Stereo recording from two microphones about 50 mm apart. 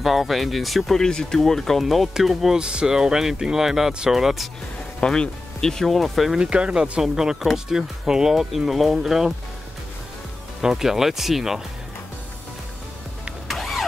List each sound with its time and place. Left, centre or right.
0.0 s speech: centre
1.0 s speech: centre
1.8 s speech: centre
5.0 s speech: centre
6.3 s speech: centre
10.6 s speech: centre
13.5 s vehicle: centre